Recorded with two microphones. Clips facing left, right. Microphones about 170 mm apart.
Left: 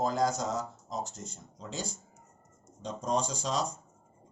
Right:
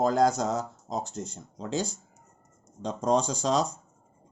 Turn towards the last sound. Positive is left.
turn(degrees=-85)